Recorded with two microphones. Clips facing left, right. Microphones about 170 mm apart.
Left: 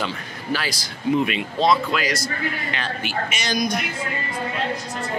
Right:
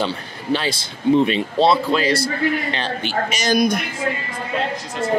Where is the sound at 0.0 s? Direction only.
25° right (ahead or behind).